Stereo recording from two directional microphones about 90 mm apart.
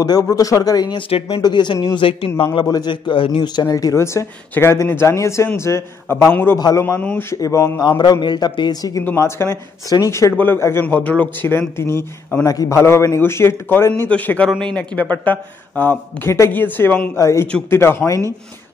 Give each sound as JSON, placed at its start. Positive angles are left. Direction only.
{"t": 0.0, "sound": "speech", "side_deg": 45}
{"t": 0.9, "sound": "speech", "side_deg": 90}
{"t": 1.4, "sound": "a man's voice", "side_deg": 60}
{"t": 2.0, "sound": "speech", "side_deg": 80}
{"t": 2.6, "sound": "speech", "side_deg": 45}
{"t": 2.9, "sound": "a man's voice", "side_deg": 60}
{"t": 7.0, "sound": "speech", "side_deg": 15}
{"t": 7.2, "sound": "speech", "side_deg": 35}
{"t": 8.0, "sound": "a man's voice", "side_deg": 55}
{"t": 9.1, "sound": "speech", "side_deg": 30}
{"t": 10.3, "sound": "a man's voice", "side_deg": 25}
{"t": 17.2, "sound": "a man's voice", "side_deg": 30}